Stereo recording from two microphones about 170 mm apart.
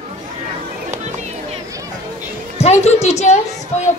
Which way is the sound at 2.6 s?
40° left (ahead or behind).